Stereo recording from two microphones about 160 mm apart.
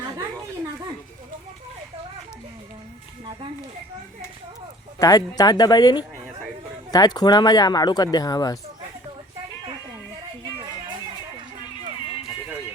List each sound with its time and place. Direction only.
4.9 s speech: 25° left (ahead or behind)